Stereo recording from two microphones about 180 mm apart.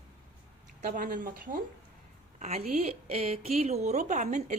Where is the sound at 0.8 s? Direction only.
50° right (ahead or behind).